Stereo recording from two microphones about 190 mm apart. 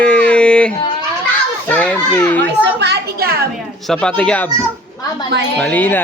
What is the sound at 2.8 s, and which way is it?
Speech, 55° right (ahead or behind).